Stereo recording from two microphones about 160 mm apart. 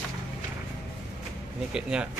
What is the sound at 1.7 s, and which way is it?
Speech, 5° right (ahead or behind).